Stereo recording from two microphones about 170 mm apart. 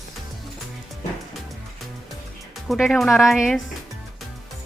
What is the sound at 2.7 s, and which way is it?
Speech, centre (ahead or behind).